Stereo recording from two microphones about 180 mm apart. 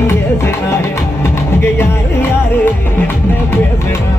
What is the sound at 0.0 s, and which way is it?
Music, 15° left (ahead or behind).